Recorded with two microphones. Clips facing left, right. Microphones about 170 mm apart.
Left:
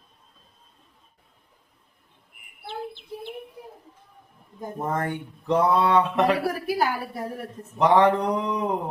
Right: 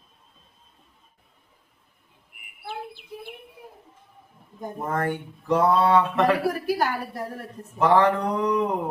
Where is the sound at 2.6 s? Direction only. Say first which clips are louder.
Left 1 dB; 10° right (ahead or behind).